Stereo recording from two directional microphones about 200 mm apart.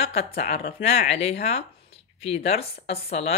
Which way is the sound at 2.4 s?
30° left (ahead or behind).